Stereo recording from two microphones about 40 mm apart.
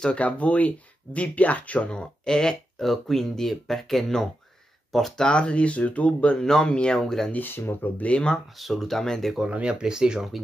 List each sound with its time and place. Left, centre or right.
0.2 s speech: left
1.9 s speech: left
2.8 s speech: centre
5.1 s speech: left
6.3 s speech: centre
7.3 s speech: left
8.0 s speech: left
8.5 s speech: centre
9.5 s speech: right